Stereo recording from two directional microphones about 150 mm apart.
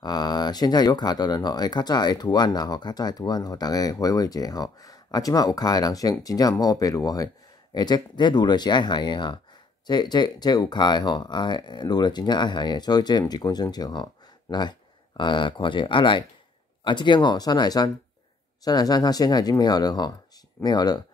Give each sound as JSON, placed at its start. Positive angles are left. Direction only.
{"t": 0.0, "sound": "speech", "side_deg": 30}